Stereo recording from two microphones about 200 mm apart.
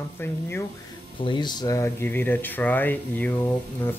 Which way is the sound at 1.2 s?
20° left (ahead or behind).